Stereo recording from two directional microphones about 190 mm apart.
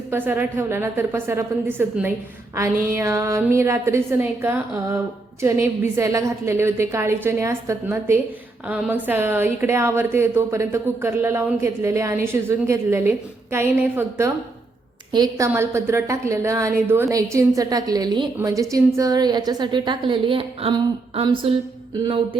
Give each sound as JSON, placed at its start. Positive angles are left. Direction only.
{"t": 0.1, "sound": "a woman's voice", "side_deg": -10}